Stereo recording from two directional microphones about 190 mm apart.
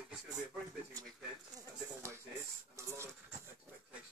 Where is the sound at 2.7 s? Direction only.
15° right (ahead or behind).